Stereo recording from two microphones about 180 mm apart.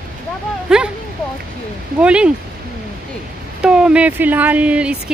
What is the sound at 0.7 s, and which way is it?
Speech, 5° right (ahead or behind).